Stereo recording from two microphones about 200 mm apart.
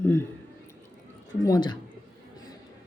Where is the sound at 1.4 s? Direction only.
20° left (ahead or behind).